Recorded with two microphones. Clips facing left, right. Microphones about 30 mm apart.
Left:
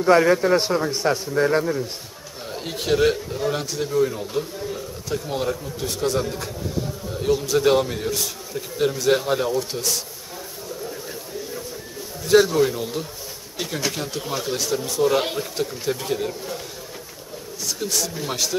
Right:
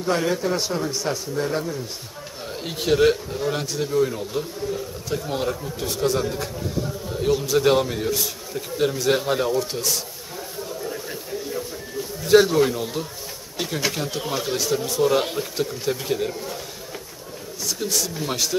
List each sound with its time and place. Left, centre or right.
0.2 s a man's voice: left
2.4 s a man's voice: centre
12.2 s a man's voice: centre
17.7 s a man's voice: centre